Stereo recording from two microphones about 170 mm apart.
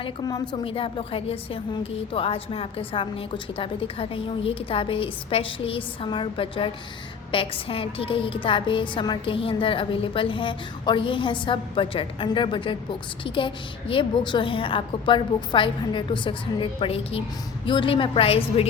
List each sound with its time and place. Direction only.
0.0 s a woman's voice: 25° left (ahead or behind)